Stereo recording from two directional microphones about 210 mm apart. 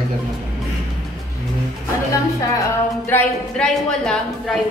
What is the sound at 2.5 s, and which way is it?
Speech, 10° left (ahead or behind).